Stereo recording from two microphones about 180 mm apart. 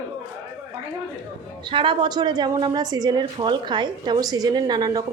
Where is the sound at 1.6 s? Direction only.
25° right (ahead or behind).